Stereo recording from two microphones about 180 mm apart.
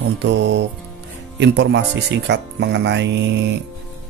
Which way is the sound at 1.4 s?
75° right (ahead or behind).